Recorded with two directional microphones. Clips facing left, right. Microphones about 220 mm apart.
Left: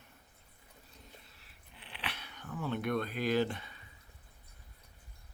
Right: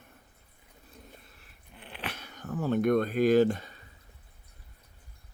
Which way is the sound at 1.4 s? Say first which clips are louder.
Right 6 dB; 50° right (ahead or behind).